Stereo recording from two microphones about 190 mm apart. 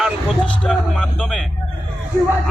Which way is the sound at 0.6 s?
5° left (ahead or behind).